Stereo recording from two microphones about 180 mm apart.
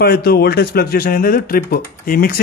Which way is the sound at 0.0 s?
60° left (ahead or behind).